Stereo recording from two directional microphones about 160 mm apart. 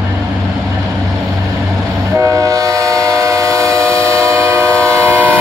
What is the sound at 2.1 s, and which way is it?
Train, 20° right (ahead or behind).